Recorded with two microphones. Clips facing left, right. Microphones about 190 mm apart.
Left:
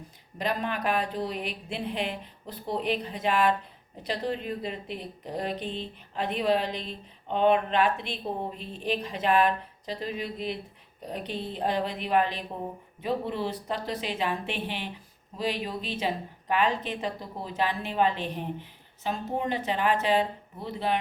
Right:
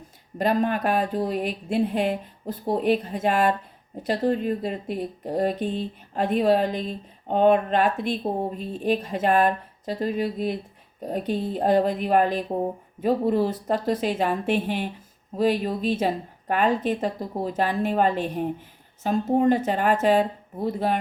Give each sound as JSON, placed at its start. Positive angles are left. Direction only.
{"t": 0.3, "sound": "speech", "side_deg": -45}